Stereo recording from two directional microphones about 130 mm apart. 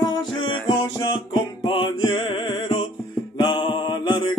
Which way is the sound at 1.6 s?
35° left (ahead or behind).